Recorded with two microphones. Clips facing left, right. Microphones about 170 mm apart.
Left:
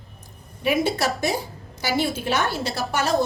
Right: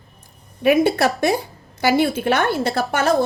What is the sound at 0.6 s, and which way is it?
A woman's voice, 60° right (ahead or behind).